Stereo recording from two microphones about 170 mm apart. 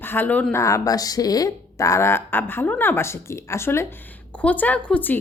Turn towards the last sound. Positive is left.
turn(degrees=10)  # may be behind; listen again after turning